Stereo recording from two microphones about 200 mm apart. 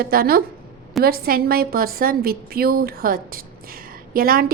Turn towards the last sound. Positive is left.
turn(degrees=-45)  # may be behind; listen again after turning